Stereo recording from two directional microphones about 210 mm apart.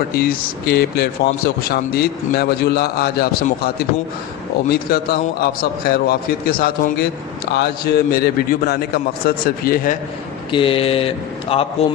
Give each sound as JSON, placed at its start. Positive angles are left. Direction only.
{"t": 0.1, "sound": "speech", "side_deg": 45}
{"t": 10.5, "sound": "speech", "side_deg": 25}